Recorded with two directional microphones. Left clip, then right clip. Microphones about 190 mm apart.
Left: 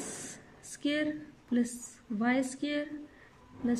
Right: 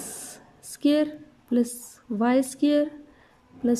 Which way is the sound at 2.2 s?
30° right (ahead or behind).